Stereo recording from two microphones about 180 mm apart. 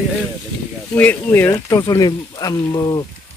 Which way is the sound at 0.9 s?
10° left (ahead or behind).